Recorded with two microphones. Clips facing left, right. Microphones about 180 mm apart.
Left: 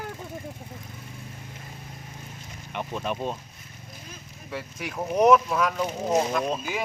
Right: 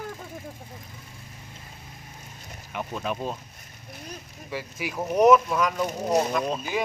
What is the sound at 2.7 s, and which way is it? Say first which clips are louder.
Speech: even; centre (ahead or behind).